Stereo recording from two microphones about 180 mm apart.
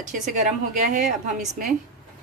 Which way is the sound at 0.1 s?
45° right (ahead or behind).